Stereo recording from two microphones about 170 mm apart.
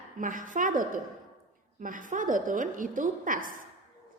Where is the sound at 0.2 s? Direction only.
50° right (ahead or behind).